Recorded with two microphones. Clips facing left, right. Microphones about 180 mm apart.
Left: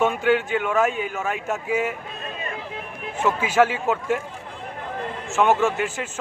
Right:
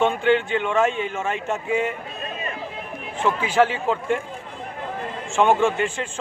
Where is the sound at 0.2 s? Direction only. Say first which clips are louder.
Right 1 dB; 5° left (ahead or behind).